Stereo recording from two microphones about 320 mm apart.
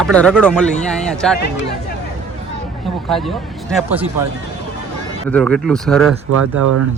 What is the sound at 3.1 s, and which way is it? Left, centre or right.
Speech, centre.